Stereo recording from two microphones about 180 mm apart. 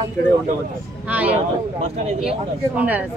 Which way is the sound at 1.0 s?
10° right (ahead or behind).